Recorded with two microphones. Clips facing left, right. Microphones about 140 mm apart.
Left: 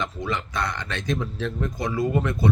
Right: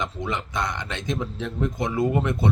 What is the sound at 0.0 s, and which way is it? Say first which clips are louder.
A man's voice: even; 20° right (ahead or behind).